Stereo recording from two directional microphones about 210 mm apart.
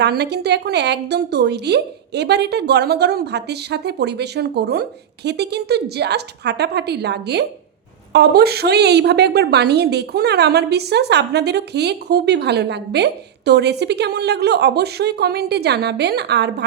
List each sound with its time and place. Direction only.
0.0 s a woman's voice: 55° right (ahead or behind)